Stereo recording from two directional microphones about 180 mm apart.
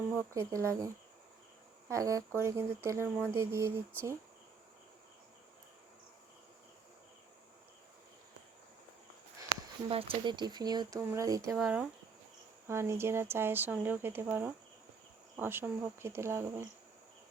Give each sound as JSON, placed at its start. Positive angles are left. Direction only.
{"t": 0.3, "sound": "speech", "side_deg": -15}
{"t": 1.9, "sound": "speech", "side_deg": -20}
{"t": 9.9, "sound": "speech", "side_deg": -30}
{"t": 11.5, "sound": "speech", "side_deg": -5}
{"t": 12.6, "sound": "speech", "side_deg": -15}